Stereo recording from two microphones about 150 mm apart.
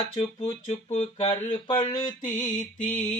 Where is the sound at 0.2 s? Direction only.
40° left (ahead or behind).